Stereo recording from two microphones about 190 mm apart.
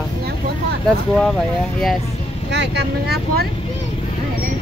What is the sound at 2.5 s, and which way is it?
Speech, 65° right (ahead or behind).